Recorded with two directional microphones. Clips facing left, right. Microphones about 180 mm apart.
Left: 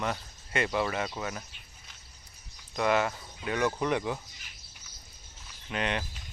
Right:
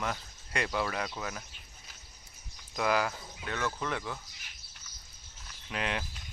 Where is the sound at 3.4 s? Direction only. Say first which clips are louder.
Left 6 dB; 15° left (ahead or behind).